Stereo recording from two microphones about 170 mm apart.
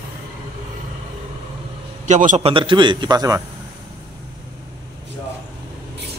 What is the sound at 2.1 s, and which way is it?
Speech, 45° right (ahead or behind).